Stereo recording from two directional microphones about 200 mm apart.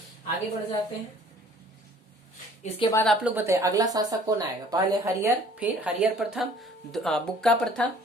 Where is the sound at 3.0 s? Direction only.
10° right (ahead or behind).